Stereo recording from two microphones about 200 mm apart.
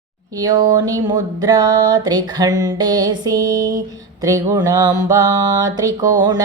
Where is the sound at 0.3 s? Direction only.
20° right (ahead or behind).